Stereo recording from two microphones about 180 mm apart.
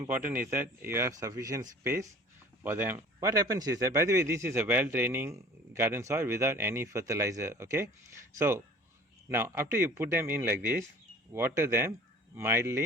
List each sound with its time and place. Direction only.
0.1 s speech: 10° right (ahead or behind)